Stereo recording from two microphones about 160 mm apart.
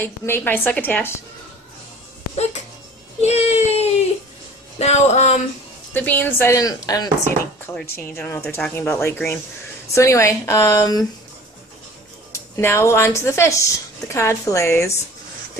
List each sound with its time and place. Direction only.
0.0 s speech: 10° left (ahead or behind)
3.2 s a sound: 40° left (ahead or behind)
4.7 s speech: 45° left (ahead or behind)
5.9 s a woman's voice: 10° left (ahead or behind)
12.3 s speech: 15° left (ahead or behind)